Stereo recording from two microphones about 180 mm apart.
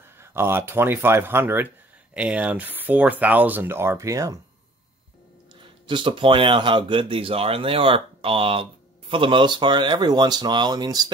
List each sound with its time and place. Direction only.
0.0 s speech: 15° right (ahead or behind)
5.9 s speech: 25° right (ahead or behind)